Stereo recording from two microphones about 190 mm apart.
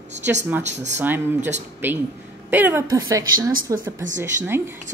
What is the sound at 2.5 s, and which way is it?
A woman's voice, 10° right (ahead or behind).